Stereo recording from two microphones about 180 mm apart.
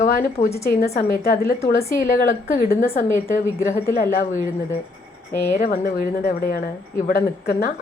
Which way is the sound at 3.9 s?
50° left (ahead or behind).